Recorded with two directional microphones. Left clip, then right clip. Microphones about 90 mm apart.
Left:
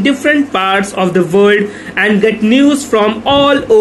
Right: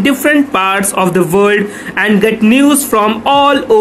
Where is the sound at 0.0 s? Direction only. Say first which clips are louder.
Right 1 dB; 35° right (ahead or behind).